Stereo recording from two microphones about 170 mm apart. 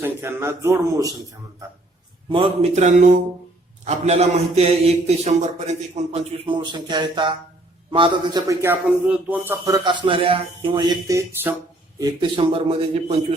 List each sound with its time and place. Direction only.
0.0 s speech: 15° right (ahead or behind)
2.3 s a man's voice: 40° right (ahead or behind)
8.6 s speech: 10° right (ahead or behind)
12.4 s a man's voice: 35° right (ahead or behind)